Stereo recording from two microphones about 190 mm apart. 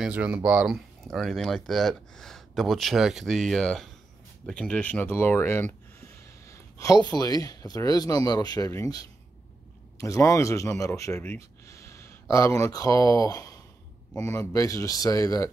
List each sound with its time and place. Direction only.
0.0 s speech: 5° right (ahead or behind); by 15.5 s 15° left (ahead or behind)